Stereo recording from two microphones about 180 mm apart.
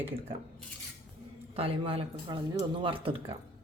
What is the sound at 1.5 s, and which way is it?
Speech, 30° right (ahead or behind).